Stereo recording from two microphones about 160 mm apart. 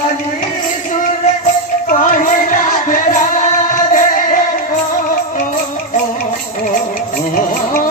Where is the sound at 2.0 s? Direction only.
55° left (ahead or behind).